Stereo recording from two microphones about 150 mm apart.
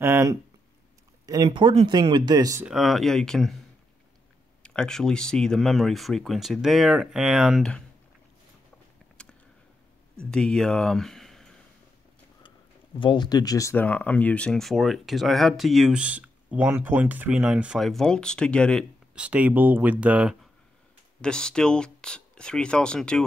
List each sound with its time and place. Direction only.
0.0 s speech: 15° right (ahead or behind)
2.6 s speech: centre (ahead or behind)
4.6 s speech: 5° left (ahead or behind)
9.2 s a sound: 5° left (ahead or behind)
10.3 s speech: 5° left (ahead or behind)
13.0 s speech: 30° left (ahead or behind); by 18.9 s 5° left (ahead or behind)
19.1 s speech: 10° right (ahead or behind)
21.2 s speech: 5° left (ahead or behind)